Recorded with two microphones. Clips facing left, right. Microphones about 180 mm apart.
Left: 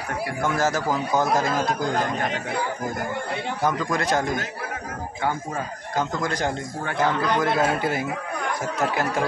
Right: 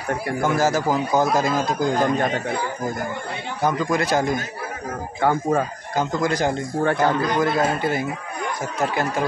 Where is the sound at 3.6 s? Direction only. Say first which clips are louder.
Right 3 dB; 5° right (ahead or behind).